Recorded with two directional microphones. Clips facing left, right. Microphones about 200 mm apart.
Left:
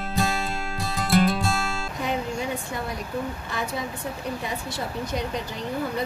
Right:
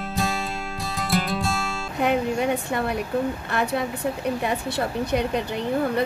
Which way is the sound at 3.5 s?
60° right (ahead or behind).